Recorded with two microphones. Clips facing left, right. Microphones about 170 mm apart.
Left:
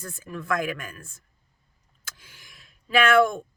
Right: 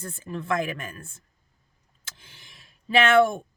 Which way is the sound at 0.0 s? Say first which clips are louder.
Right 2 dB; 30° right (ahead or behind).